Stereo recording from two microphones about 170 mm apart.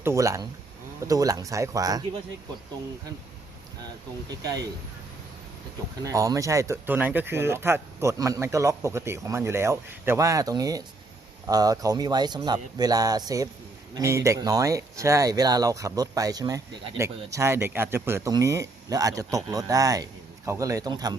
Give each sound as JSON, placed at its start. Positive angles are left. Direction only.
{"t": 0.0, "sound": "speech", "side_deg": -15}
{"t": 6.0, "sound": "speech", "side_deg": -20}